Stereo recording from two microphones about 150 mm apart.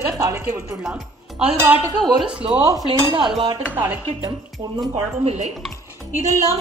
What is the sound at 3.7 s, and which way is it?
Speech, 15° right (ahead or behind).